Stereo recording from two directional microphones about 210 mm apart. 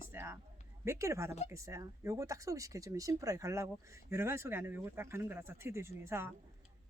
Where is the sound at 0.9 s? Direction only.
15° right (ahead or behind).